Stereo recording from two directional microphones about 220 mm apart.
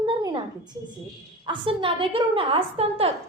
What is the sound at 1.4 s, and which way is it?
A woman's voice, 25° right (ahead or behind).